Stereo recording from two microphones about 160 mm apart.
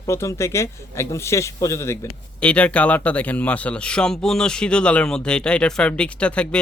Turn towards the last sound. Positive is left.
turn(degrees=5)  # may be behind; listen again after turning